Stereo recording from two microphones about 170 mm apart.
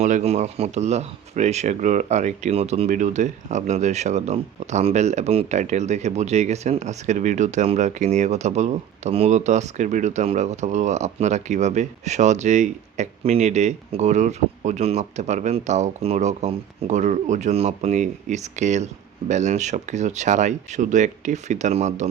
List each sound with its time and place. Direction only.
0.0 s speech: 40° right (ahead or behind)